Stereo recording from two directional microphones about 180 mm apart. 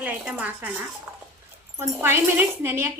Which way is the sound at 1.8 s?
10° right (ahead or behind).